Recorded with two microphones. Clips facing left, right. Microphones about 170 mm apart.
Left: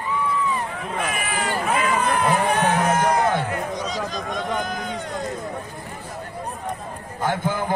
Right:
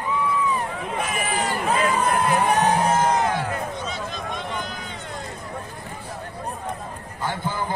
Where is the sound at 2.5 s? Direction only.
35° right (ahead or behind).